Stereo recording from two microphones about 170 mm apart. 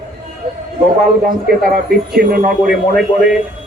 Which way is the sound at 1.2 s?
60° right (ahead or behind).